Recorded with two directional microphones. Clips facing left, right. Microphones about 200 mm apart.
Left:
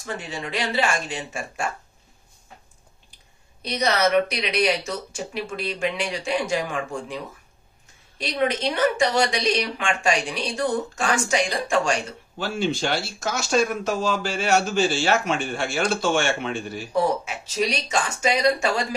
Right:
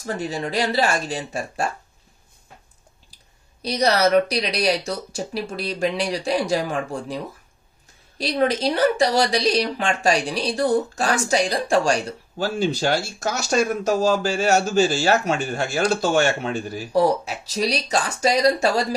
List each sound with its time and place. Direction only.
0.0 s a woman's voice: 40° right (ahead or behind)
3.6 s a woman's voice: 35° right (ahead or behind)
8.2 s a woman's voice: 35° right (ahead or behind)